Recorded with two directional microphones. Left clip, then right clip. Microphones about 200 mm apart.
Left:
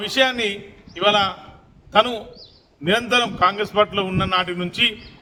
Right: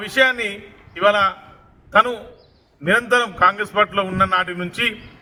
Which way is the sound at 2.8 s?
10° left (ahead or behind).